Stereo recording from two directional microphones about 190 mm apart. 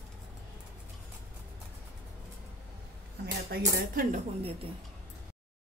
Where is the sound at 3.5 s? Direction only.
50° right (ahead or behind).